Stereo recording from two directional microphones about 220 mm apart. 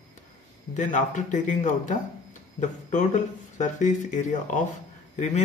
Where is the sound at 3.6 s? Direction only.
35° left (ahead or behind).